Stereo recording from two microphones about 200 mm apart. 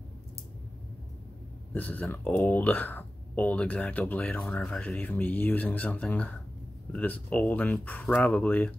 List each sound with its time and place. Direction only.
1.7 s speech: 10° left (ahead or behind)